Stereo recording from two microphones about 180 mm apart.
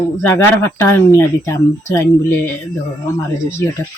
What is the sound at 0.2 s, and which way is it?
Speech, 15° left (ahead or behind).